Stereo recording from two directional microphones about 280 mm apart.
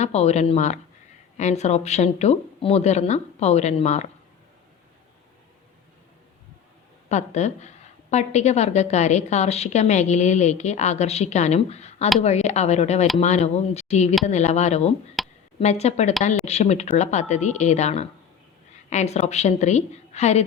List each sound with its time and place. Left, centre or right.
0.0 s a woman's voice: left
7.1 s a woman's voice: left
15.2 s a sound: centre
15.5 s a woman's voice: left